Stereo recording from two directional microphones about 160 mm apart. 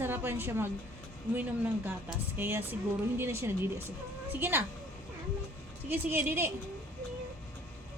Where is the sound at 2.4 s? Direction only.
15° right (ahead or behind).